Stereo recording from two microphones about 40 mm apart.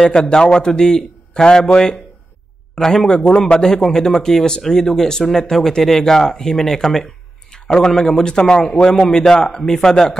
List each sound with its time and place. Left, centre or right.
0.0 s a man's voice: centre